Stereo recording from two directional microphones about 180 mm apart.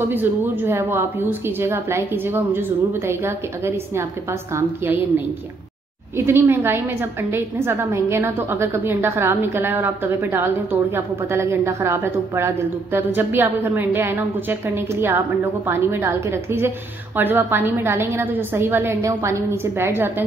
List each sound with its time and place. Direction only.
0.1 s a woman's voice: 10° right (ahead or behind)